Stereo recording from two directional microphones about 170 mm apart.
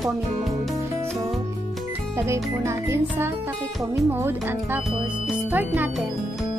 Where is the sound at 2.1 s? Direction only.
15° right (ahead or behind).